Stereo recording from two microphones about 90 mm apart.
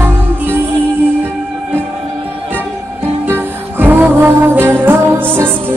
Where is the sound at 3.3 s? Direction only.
25° right (ahead or behind).